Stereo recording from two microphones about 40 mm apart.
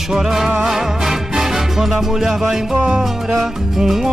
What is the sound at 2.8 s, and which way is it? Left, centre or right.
Music, right.